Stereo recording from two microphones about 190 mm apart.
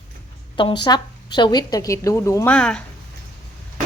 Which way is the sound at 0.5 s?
25° left (ahead or behind).